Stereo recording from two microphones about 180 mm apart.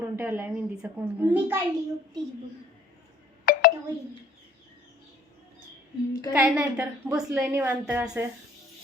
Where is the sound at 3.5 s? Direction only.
50° left (ahead or behind).